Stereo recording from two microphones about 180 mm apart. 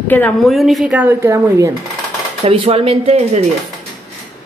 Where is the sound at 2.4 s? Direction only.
35° right (ahead or behind).